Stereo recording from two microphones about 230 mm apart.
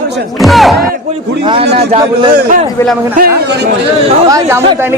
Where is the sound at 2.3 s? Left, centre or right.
Right.